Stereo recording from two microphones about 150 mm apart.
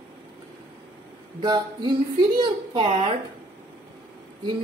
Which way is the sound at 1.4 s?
30° right (ahead or behind).